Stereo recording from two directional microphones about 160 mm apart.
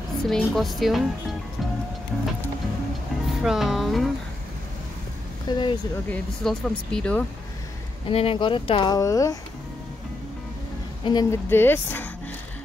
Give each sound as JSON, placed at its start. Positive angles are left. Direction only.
{"t": 0.2, "sound": "a woman's voice", "side_deg": 0}
{"t": 3.3, "sound": "speech", "side_deg": 0}
{"t": 5.5, "sound": "speech", "side_deg": 30}
{"t": 6.0, "sound": "speech", "side_deg": 5}
{"t": 8.1, "sound": "speech", "side_deg": 35}
{"t": 11.1, "sound": "speech", "side_deg": 25}
{"t": 11.4, "sound": "speech", "side_deg": 15}